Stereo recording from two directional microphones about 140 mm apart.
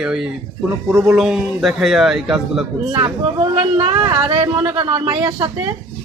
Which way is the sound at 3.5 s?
45° right (ahead or behind).